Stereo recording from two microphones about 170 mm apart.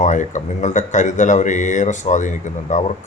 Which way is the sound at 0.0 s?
45° left (ahead or behind).